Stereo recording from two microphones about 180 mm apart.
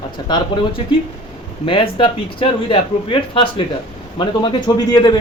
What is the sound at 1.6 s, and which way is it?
Speech, 30° left (ahead or behind).